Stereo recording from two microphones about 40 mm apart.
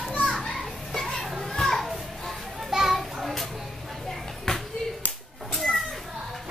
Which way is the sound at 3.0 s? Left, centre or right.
Centre.